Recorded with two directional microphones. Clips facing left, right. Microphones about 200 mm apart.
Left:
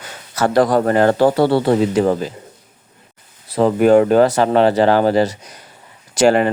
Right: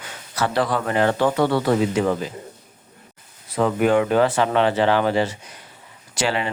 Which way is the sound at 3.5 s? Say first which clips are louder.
Left 6 dB; 35° left (ahead or behind).